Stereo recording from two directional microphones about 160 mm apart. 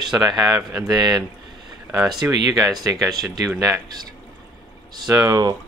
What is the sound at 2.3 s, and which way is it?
Speech, 25° right (ahead or behind).